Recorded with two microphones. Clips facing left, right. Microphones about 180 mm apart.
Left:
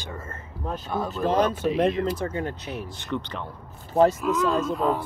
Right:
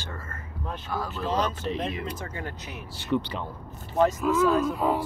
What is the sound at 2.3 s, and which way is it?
Speech, 25° left (ahead or behind).